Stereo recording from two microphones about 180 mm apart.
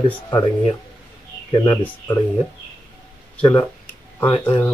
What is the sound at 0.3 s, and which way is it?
Speech, 25° left (ahead or behind).